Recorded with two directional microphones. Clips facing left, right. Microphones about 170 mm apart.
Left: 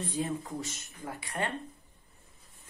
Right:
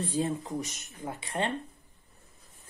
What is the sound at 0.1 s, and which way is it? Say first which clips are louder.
Speech: right 3 dB; 25° right (ahead or behind).